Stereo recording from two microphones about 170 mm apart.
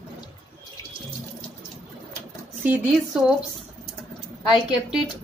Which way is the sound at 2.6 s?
5° right (ahead or behind).